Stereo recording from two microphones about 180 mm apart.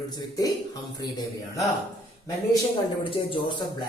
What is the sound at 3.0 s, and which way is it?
Speech, 30° left (ahead or behind).